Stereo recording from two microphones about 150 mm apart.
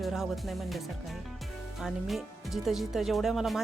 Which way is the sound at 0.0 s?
Centre (ahead or behind).